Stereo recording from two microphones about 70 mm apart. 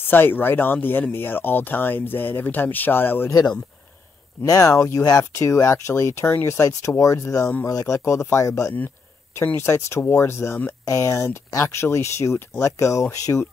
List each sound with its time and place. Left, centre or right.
0.0 s speech: left
3.3 s speech: left
4.5 s speech: left
8.0 s speech: left
10.9 s speech: left
13.0 s speech: left